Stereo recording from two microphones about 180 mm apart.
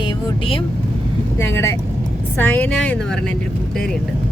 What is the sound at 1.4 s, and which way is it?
Speech, 15° left (ahead or behind).